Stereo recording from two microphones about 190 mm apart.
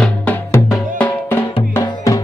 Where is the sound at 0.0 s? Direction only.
10° left (ahead or behind).